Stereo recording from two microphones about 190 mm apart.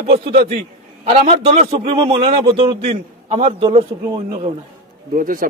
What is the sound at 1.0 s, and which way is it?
A man's voice, 35° right (ahead or behind).